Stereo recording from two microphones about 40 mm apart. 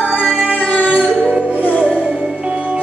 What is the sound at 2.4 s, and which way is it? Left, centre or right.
Music, right.